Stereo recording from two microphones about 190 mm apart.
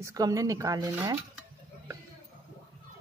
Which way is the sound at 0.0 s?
15° right (ahead or behind).